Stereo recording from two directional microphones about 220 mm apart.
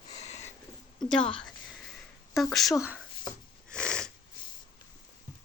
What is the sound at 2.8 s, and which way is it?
Speech, 5° right (ahead or behind).